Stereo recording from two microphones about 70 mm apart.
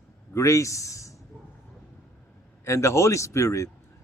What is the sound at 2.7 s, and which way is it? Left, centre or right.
Speech, left.